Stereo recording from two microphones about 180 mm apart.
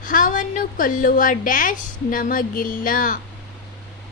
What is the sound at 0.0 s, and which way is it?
A woman's voice, 50° left (ahead or behind).